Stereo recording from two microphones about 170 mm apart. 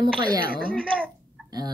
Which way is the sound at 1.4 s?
25° right (ahead or behind).